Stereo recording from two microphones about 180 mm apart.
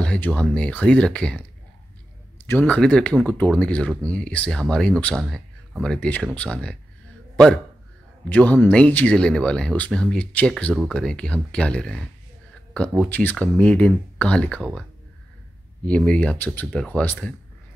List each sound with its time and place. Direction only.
0.0 s speech: 5° left (ahead or behind)
2.4 s a man's voice: 10° left (ahead or behind)
16.1 s speech: 5° left (ahead or behind)